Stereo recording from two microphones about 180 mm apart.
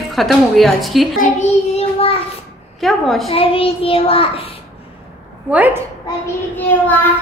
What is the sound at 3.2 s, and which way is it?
Child singing, 30° left (ahead or behind).